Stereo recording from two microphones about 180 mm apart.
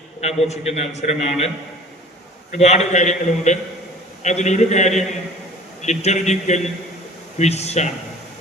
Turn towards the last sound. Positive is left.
turn(degrees=40)  # may be behind; listen again after turning